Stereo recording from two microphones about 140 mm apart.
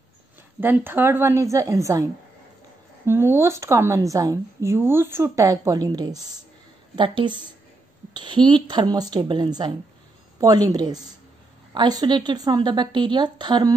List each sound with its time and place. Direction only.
0.6 s a woman's voice: 15° right (ahead or behind)
3.1 s a woman's voice: 15° right (ahead or behind)